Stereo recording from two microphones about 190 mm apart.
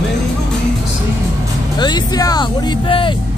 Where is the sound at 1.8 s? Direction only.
20° left (ahead or behind).